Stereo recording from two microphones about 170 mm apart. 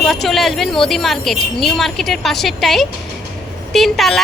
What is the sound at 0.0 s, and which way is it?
Speech, centre (ahead or behind).